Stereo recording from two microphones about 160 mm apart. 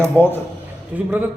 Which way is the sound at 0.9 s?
10° right (ahead or behind).